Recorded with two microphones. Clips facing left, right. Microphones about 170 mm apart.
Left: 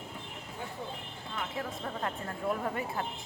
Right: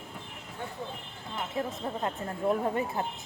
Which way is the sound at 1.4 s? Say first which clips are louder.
Right 4 dB; 25° right (ahead or behind).